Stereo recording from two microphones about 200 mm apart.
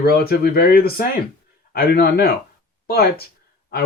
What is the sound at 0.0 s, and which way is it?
Speech, 50° left (ahead or behind).